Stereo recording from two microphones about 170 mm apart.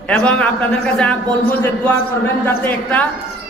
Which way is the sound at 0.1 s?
5° left (ahead or behind).